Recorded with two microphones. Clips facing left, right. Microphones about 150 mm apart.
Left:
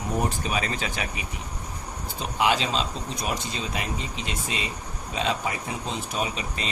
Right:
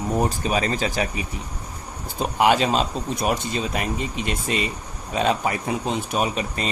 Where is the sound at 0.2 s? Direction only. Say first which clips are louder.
Right 5 dB; 35° right (ahead or behind).